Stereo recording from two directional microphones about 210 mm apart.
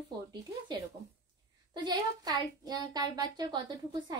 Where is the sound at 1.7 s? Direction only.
20° right (ahead or behind).